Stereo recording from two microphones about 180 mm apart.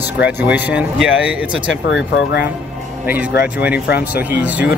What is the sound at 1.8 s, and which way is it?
Speech, 90° left.